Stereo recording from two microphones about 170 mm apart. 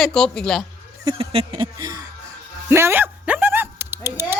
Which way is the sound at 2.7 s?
15° right (ahead or behind).